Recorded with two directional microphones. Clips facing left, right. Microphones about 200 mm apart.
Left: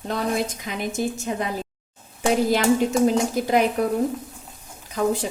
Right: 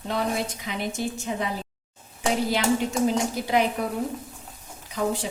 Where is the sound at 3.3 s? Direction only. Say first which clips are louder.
Left 3 dB; 45° left (ahead or behind).